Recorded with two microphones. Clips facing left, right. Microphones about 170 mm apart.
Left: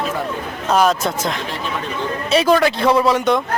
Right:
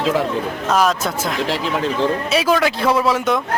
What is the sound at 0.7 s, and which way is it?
Speech, centre (ahead or behind).